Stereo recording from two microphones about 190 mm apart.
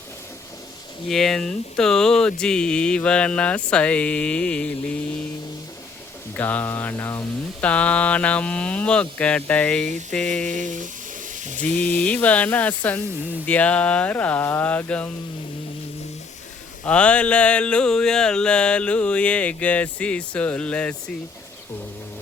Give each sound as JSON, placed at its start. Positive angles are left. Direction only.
{"t": 1.0, "sound": "speech", "side_deg": 0}
{"t": 6.3, "sound": "mantra", "side_deg": 10}
{"t": 10.5, "sound": "a sound", "side_deg": -40}
{"t": 11.8, "sound": "mantra", "side_deg": 5}
{"t": 16.8, "sound": "mantra", "side_deg": 5}